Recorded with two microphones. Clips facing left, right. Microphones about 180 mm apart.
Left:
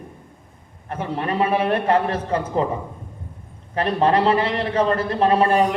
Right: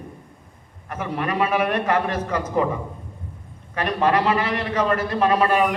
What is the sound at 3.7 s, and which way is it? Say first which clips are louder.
A man's voice: left 2 dB; 30° left (ahead or behind).